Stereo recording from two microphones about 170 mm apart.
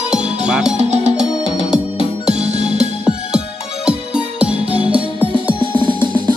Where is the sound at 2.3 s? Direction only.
40° right (ahead or behind).